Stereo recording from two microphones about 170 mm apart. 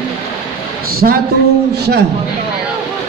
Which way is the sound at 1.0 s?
55° right (ahead or behind).